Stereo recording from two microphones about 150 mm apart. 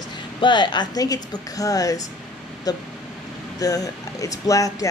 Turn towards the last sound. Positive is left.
turn(degrees=20)  # may be behind; listen again after turning